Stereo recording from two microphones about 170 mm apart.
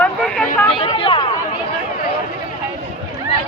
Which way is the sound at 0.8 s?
30° left (ahead or behind).